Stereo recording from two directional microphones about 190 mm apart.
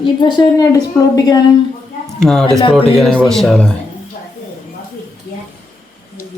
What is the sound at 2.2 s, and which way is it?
Speech, 5° left (ahead or behind).